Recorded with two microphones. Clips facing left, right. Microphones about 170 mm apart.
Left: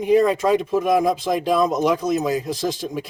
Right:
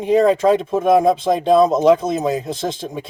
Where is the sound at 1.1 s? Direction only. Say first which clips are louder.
Right 5 dB; 25° right (ahead or behind).